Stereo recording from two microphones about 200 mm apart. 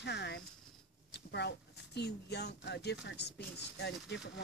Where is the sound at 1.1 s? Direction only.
55° left (ahead or behind).